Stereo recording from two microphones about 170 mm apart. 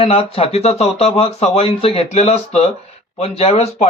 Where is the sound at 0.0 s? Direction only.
35° left (ahead or behind).